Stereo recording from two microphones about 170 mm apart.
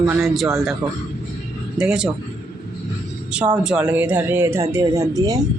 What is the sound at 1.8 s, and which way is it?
Speech, 5° right (ahead or behind).